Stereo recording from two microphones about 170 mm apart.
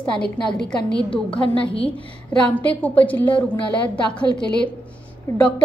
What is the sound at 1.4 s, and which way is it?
Speech, 30° left (ahead or behind).